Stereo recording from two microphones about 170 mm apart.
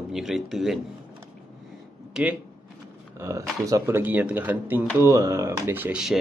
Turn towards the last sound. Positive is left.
turn(degrees=-5)  # may be behind; listen again after turning